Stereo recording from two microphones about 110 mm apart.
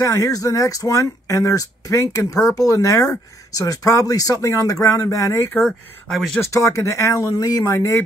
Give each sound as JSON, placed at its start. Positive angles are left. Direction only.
{"t": 0.0, "sound": "speech", "side_deg": 30}
{"t": 5.6, "sound": "speech", "side_deg": 5}
{"t": 6.4, "sound": "speech", "side_deg": 30}